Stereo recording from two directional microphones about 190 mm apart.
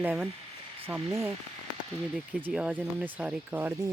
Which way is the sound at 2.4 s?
10° right (ahead or behind).